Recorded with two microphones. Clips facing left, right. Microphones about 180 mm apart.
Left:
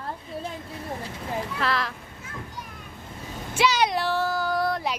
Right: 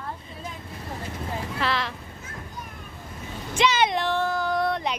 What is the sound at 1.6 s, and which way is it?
Speech, centre (ahead or behind).